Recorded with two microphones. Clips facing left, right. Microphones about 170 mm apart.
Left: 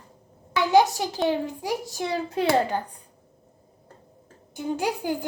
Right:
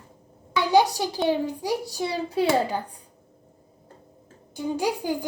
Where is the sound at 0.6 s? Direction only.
15° right (ahead or behind).